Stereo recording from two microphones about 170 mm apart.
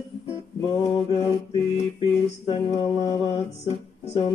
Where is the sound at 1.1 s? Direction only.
30° left (ahead or behind).